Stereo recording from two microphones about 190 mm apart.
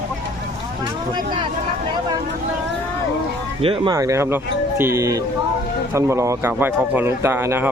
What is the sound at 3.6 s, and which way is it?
Speech, 30° right (ahead or behind).